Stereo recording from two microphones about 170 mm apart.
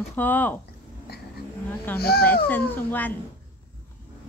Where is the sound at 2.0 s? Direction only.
70° left (ahead or behind).